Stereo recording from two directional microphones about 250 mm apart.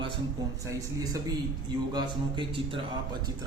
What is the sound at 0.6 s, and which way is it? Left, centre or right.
A man's voice, centre.